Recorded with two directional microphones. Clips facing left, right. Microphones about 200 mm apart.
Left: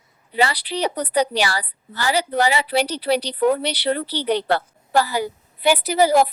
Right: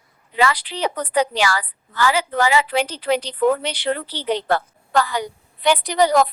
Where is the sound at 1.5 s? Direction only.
35° left (ahead or behind).